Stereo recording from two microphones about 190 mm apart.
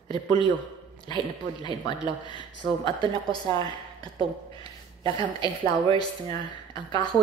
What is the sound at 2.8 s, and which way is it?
Speech, 20° left (ahead or behind).